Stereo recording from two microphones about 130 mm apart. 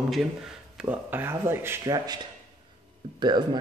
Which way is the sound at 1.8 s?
30° right (ahead or behind).